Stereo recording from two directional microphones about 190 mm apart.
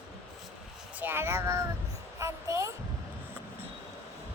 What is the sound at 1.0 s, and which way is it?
Speech, 10° right (ahead or behind).